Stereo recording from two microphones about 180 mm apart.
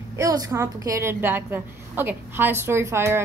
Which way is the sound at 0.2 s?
20° right (ahead or behind).